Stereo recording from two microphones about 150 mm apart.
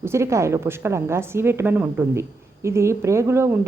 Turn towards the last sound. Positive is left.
turn(degrees=-15)  # may be behind; listen again after turning